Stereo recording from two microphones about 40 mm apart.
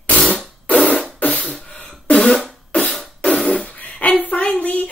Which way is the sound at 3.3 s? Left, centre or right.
Centre.